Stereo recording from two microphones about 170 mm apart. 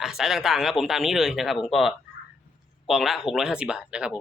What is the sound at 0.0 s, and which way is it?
Speech, centre (ahead or behind).